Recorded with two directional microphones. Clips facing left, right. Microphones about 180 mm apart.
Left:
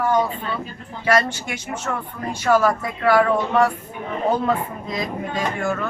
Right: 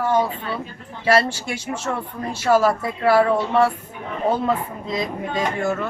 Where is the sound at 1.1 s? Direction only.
30° right (ahead or behind).